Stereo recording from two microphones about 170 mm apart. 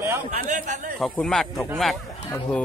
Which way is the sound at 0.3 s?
45° right (ahead or behind).